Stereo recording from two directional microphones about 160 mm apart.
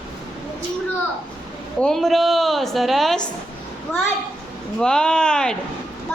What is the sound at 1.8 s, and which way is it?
A woman's voice, centre (ahead or behind).